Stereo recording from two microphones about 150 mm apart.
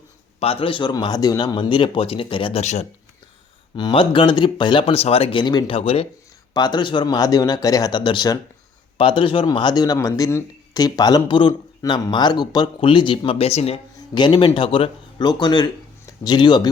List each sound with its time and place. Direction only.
0.3 s a man's voice: 40° left (ahead or behind)
3.8 s a man's voice: 30° left (ahead or behind)
6.5 s speech: 30° left (ahead or behind); by 13.7 s 45° left (ahead or behind)
14.1 s speech: 30° left (ahead or behind)